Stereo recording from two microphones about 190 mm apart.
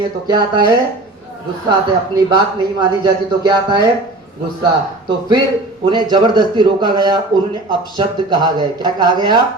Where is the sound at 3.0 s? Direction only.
20° right (ahead or behind).